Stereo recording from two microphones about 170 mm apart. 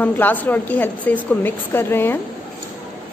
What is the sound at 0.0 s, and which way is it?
A woman's voice, 10° left (ahead or behind).